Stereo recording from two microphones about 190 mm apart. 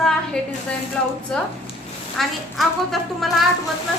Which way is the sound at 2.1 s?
Centre (ahead or behind).